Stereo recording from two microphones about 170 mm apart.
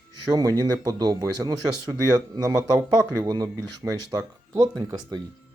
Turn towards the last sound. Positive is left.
turn(degrees=-25)  # may be behind; listen again after turning